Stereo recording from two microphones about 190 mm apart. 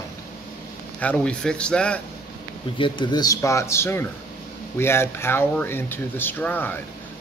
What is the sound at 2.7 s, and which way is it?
Speech, 25° left (ahead or behind).